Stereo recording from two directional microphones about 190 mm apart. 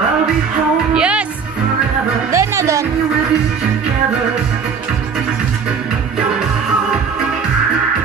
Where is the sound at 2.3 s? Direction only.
15° right (ahead or behind).